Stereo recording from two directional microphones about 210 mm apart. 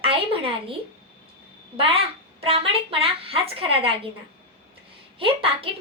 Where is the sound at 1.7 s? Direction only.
25° right (ahead or behind).